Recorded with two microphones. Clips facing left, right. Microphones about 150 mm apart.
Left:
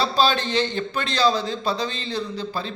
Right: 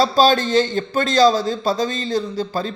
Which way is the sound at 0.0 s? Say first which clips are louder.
Right 6 dB; 40° right (ahead or behind).